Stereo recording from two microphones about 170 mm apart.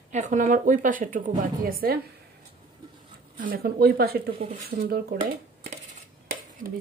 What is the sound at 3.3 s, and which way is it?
Speech, 55° right (ahead or behind).